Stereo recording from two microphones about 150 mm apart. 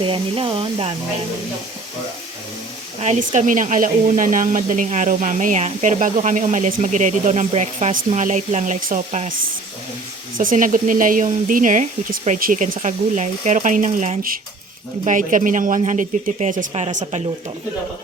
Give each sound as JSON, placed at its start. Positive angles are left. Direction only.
{"t": 0.0, "sound": "speech", "side_deg": -35}
{"t": 3.0, "sound": "speech", "side_deg": -50}
{"t": 10.3, "sound": "speech", "side_deg": -65}